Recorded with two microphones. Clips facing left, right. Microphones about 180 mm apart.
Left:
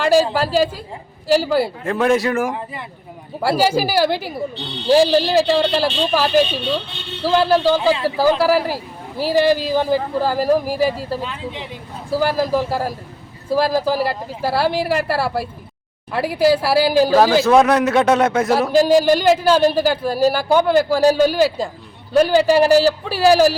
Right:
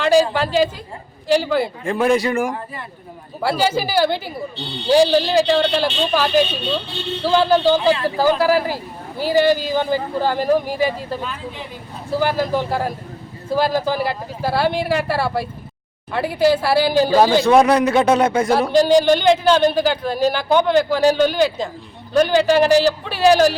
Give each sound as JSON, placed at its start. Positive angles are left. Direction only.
{"t": 0.0, "sound": "speech", "side_deg": 0}
{"t": 3.6, "sound": "speech", "side_deg": 5}
{"t": 11.2, "sound": "speech", "side_deg": 25}
{"t": 12.1, "sound": "a man's voice", "side_deg": 0}